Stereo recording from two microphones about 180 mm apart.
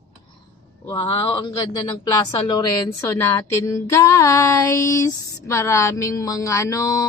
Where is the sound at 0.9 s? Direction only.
25° left (ahead or behind).